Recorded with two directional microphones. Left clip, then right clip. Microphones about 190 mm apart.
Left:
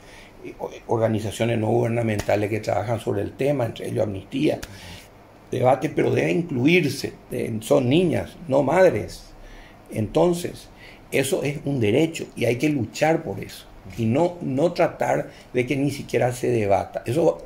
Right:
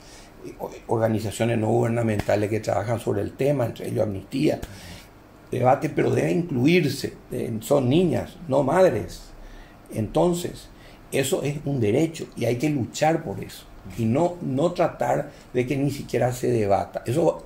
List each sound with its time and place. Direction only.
0.6 s speech: 5° left (ahead or behind)
7.3 s speech: 25° left (ahead or behind)